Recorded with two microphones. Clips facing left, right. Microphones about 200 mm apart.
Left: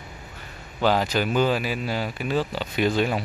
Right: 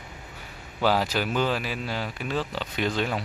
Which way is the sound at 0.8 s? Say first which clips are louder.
Left 2 dB; 5° right (ahead or behind).